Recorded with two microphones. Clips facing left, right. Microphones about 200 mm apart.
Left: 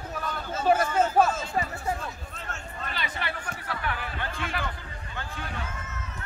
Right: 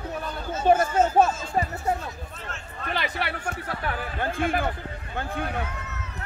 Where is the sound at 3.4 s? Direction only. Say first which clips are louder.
Right 4 dB; 45° right (ahead or behind); by 6.2 s 65° right (ahead or behind).